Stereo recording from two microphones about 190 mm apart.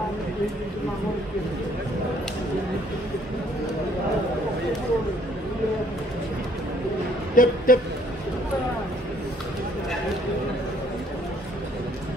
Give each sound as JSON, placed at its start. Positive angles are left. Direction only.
{"t": 7.3, "sound": "speech", "side_deg": 45}